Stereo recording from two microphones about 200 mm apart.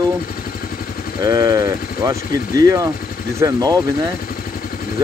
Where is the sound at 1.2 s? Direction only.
15° right (ahead or behind).